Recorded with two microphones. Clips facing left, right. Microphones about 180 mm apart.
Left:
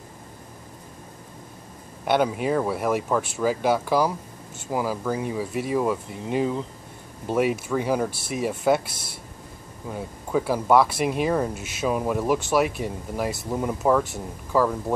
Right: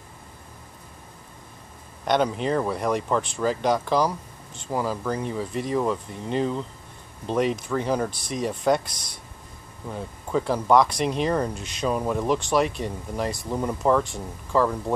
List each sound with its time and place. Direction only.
2.0 s speech: 5° left (ahead or behind)